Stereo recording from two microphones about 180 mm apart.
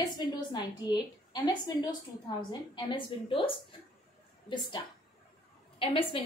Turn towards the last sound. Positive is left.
turn(degrees=30)  # may be behind; listen again after turning